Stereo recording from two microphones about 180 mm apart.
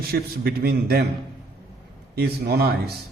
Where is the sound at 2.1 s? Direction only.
60° right (ahead or behind).